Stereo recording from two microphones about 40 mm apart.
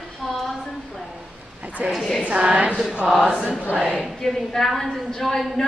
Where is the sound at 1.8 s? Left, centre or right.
Right.